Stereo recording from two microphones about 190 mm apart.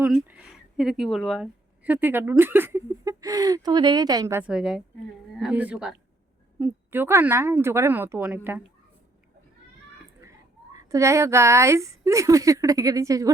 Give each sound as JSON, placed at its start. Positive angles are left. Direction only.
{"t": 0.0, "sound": "a woman's voice", "side_deg": -10}
{"t": 10.8, "sound": "a woman's voice", "side_deg": -15}